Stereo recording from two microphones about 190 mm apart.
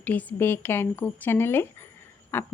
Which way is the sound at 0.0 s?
10° left (ahead or behind).